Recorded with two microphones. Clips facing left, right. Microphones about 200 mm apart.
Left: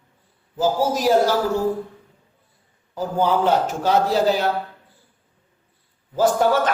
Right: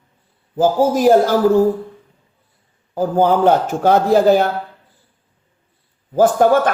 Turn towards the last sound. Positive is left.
turn(degrees=-50)  # may be behind; listen again after turning